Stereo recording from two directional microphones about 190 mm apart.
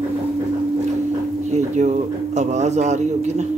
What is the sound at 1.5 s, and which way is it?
A man's voice, 35° right (ahead or behind).